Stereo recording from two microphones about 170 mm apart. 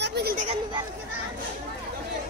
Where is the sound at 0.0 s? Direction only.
70° right (ahead or behind).